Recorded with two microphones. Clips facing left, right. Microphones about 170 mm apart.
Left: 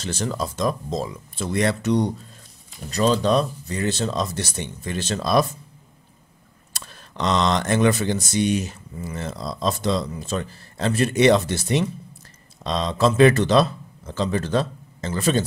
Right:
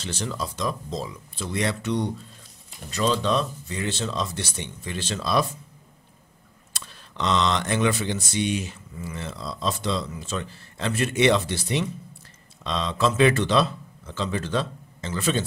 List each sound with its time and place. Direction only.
0.0 s speech: 45° left (ahead or behind)
6.7 s speech: 45° left (ahead or behind)